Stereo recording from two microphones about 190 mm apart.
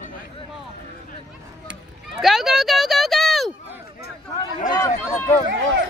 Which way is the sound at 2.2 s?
Centre (ahead or behind).